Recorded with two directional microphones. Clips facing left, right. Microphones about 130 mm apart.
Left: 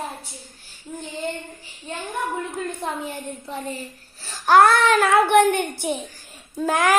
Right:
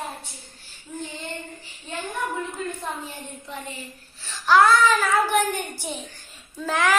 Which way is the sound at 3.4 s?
35° left (ahead or behind).